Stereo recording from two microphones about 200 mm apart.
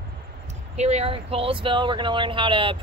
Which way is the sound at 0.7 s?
30° right (ahead or behind).